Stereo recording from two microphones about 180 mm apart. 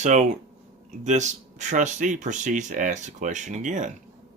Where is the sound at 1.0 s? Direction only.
40° right (ahead or behind).